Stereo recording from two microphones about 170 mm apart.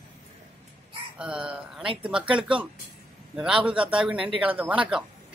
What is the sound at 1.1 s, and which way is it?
Chicken, 5° right (ahead or behind).